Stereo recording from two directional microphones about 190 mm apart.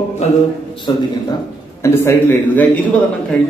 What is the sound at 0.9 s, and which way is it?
Speech, 25° left (ahead or behind).